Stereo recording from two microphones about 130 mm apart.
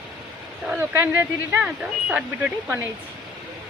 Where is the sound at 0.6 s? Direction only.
15° right (ahead or behind).